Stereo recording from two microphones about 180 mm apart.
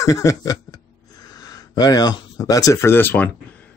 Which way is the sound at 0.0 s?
20° left (ahead or behind).